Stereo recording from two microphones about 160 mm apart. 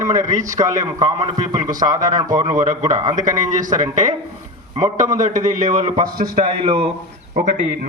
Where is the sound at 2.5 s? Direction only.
50° right (ahead or behind).